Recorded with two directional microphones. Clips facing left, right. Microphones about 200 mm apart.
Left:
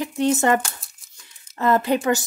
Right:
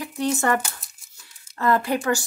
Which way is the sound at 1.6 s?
20° left (ahead or behind).